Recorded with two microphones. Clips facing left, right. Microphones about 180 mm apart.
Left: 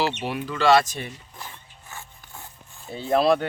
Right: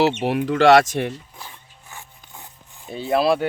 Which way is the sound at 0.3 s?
70° right (ahead or behind).